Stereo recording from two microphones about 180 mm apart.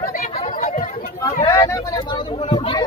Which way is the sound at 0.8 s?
50° left (ahead or behind).